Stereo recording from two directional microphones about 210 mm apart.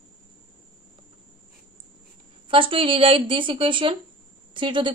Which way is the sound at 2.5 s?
25° right (ahead or behind).